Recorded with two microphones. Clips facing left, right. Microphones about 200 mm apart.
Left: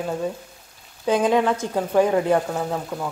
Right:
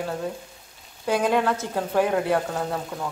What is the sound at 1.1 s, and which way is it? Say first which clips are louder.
Speech: left 3 dB; 20° left (ahead or behind).